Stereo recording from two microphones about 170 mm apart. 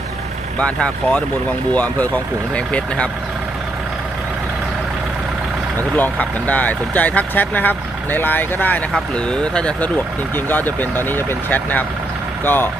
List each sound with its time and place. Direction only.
0.6 s speech: 5° left (ahead or behind)
6.0 s speech: 10° left (ahead or behind)